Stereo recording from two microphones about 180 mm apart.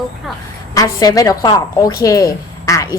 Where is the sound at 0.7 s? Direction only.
20° left (ahead or behind).